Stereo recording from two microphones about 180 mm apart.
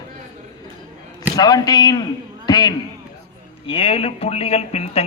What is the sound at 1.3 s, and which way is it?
A man's voice, 20° left (ahead or behind).